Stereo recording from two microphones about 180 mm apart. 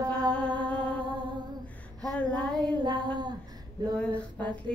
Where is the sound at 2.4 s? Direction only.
25° right (ahead or behind).